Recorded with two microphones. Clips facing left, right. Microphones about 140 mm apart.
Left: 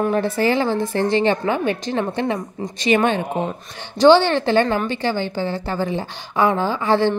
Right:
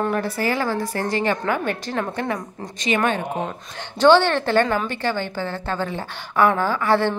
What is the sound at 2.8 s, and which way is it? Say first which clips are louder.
Speech: left 4 dB; 35° left (ahead or behind).